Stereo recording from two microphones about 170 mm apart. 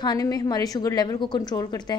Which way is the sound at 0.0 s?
20° left (ahead or behind).